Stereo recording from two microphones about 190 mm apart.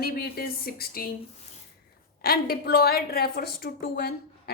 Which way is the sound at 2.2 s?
50° left (ahead or behind).